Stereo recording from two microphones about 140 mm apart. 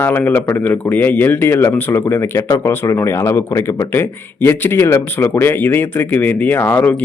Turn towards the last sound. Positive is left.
turn(degrees=15)  # may be behind; listen again after turning